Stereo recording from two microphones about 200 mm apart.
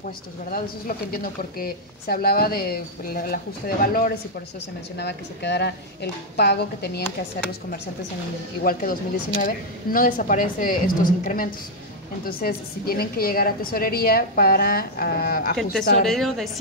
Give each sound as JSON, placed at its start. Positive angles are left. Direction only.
{"t": 0.5, "sound": "a woman's voice", "side_deg": 50}
{"t": 4.9, "sound": "speech", "side_deg": 60}
{"t": 8.6, "sound": "a woman's voice", "side_deg": 45}
{"t": 15.7, "sound": "speech", "side_deg": 0}